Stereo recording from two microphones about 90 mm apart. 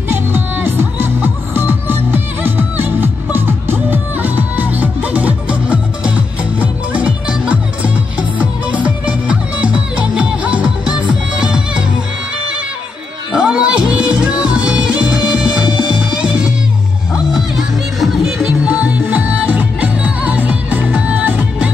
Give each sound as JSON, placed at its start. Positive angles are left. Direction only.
{"t": 0.1, "sound": "music", "side_deg": -25}
{"t": 13.3, "sound": "music", "side_deg": -10}
{"t": 18.7, "sound": "music", "side_deg": -15}